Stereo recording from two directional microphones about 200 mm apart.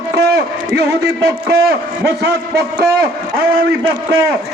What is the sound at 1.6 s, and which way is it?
A man's voice, 50° right (ahead or behind).